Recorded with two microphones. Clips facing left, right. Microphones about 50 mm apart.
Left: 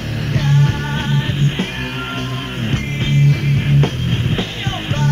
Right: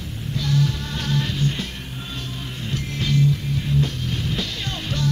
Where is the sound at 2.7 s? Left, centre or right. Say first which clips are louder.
Left 3 dB; left.